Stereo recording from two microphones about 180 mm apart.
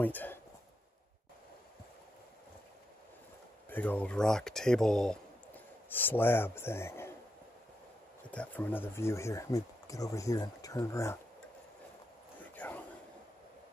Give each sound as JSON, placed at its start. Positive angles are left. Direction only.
{"t": 0.0, "sound": "speech", "side_deg": 10}
{"t": 3.7, "sound": "speech", "side_deg": 10}
{"t": 8.3, "sound": "speech", "side_deg": 10}
{"t": 12.5, "sound": "a sound", "side_deg": 10}